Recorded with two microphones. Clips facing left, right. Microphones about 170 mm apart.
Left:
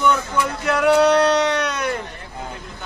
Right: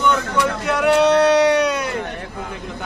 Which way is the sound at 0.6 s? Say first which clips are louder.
Left 1 dB; centre (ahead or behind).